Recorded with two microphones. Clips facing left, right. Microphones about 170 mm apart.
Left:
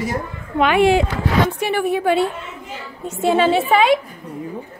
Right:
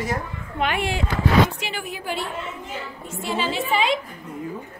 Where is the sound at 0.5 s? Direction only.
90° left.